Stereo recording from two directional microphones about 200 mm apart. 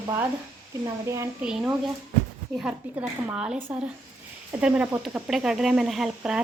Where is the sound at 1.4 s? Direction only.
5° right (ahead or behind).